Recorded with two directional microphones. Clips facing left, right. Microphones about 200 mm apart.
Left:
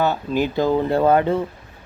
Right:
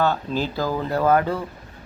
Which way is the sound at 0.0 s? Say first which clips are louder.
Left 2 dB; 15° left (ahead or behind).